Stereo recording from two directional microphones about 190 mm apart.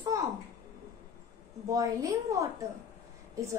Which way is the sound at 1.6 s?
15° right (ahead or behind).